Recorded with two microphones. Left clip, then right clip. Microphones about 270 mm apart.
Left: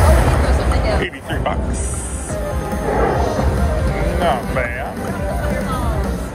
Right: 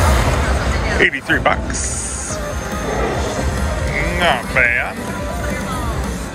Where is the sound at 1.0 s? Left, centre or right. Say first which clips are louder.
Right 8 dB; centre.